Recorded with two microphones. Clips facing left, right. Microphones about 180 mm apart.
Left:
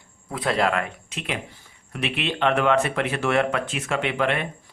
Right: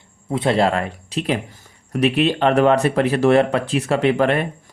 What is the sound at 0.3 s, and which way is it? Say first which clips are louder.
A man's voice: right 5 dB; 25° right (ahead or behind).